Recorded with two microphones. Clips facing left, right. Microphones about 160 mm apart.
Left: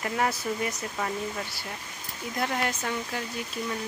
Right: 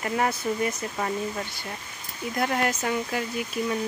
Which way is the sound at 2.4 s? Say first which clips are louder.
Right 4 dB; centre (ahead or behind).